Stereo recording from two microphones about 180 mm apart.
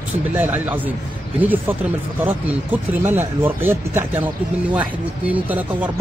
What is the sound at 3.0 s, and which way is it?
Speech, 10° right (ahead or behind).